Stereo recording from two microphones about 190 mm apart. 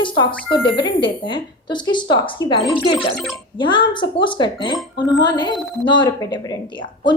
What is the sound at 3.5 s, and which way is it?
A woman's voice, 25° left (ahead or behind).